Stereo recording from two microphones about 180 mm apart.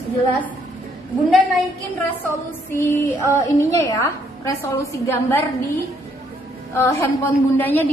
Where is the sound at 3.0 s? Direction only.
15° left (ahead or behind).